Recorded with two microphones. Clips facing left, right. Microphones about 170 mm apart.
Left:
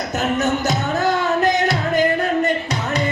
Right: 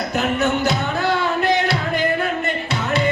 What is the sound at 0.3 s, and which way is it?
Music, 40° left (ahead or behind).